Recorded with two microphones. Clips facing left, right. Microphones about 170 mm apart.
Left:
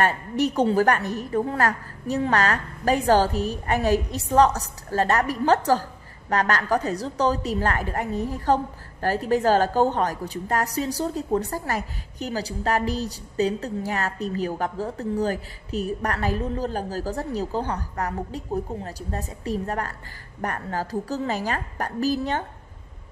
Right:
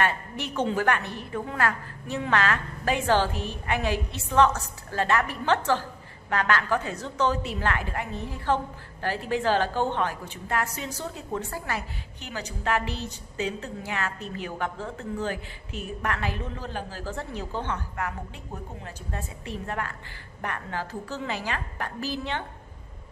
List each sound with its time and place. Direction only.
0.0 s a woman's voice: 40° left (ahead or behind)